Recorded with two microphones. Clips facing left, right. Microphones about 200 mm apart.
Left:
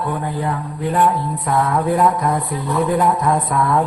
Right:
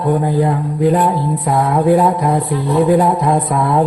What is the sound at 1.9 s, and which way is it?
A man's voice, 35° right (ahead or behind).